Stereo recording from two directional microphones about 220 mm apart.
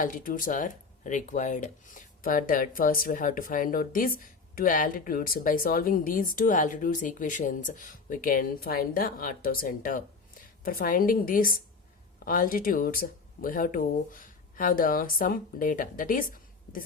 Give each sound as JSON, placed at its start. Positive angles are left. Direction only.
{"t": 0.0, "sound": "speech", "side_deg": 40}